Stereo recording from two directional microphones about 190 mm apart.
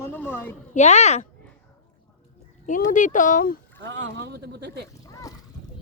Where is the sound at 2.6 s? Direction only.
40° left (ahead or behind).